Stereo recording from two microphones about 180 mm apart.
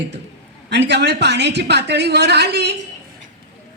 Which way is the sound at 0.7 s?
75° right (ahead or behind).